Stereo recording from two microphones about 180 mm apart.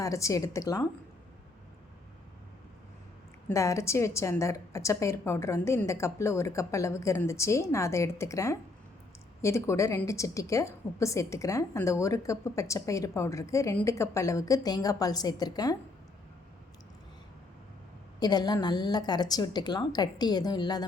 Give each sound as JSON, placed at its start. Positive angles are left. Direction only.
{"t": 0.0, "sound": "a woman's voice", "side_deg": 15}
{"t": 3.5, "sound": "a woman's voice", "side_deg": 15}
{"t": 18.2, "sound": "a woman's voice", "side_deg": 25}